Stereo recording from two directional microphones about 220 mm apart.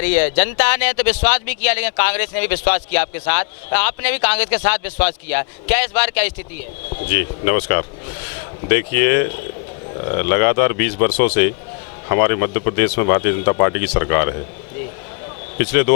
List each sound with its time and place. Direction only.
0.0 s speech: 10° left (ahead or behind)
15.5 s speech: 15° left (ahead or behind)